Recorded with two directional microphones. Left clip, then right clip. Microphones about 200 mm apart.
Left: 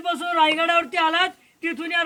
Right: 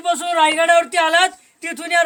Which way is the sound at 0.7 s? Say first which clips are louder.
Right 6 dB; 20° right (ahead or behind).